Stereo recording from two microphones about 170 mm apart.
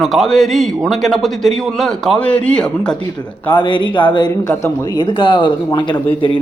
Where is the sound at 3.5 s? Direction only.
25° left (ahead or behind).